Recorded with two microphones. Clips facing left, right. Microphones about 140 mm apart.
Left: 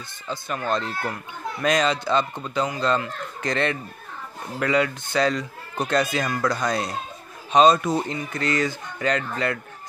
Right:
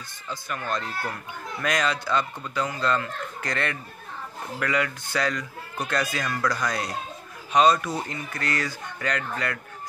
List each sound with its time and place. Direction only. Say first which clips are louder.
0.3 s speech: left 4 dB; 25° left (ahead or behind)